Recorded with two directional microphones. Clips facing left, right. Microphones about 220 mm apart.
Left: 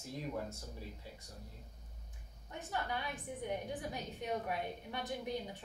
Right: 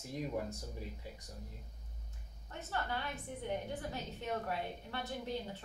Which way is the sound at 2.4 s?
15° left (ahead or behind).